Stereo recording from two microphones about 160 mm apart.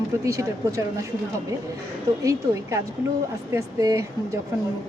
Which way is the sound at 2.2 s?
20° right (ahead or behind).